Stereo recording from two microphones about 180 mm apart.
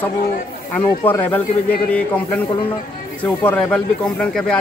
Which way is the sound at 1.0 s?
10° left (ahead or behind).